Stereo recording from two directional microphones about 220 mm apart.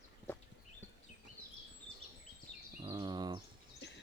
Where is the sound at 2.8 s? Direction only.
20° right (ahead or behind).